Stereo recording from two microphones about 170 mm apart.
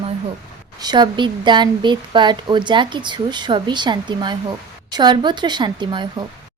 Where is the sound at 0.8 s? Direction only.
25° right (ahead or behind).